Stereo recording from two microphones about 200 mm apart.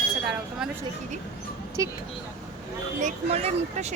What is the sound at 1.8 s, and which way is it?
Speech, 15° right (ahead or behind).